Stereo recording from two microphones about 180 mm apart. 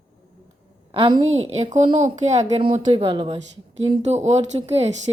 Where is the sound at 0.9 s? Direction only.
30° right (ahead or behind).